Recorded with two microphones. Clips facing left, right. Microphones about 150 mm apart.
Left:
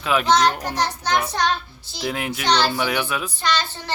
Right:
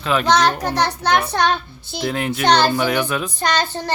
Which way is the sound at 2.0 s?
5° left (ahead or behind).